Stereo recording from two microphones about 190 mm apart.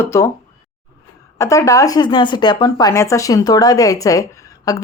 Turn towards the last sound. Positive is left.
turn(degrees=20)  # may be behind; listen again after turning